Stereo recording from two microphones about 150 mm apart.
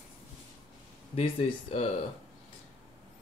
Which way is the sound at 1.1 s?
45° left (ahead or behind).